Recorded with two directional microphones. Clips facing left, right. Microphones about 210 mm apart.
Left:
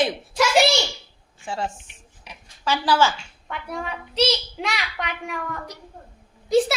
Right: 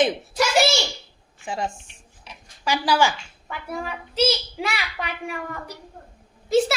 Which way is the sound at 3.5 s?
5° right (ahead or behind).